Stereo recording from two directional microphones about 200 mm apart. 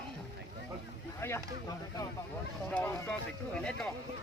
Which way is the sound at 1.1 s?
15° left (ahead or behind).